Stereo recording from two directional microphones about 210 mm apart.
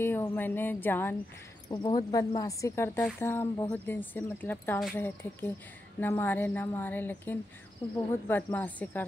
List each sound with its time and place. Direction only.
0.0 s speech: 10° left (ahead or behind)
1.7 s speech: 20° left (ahead or behind)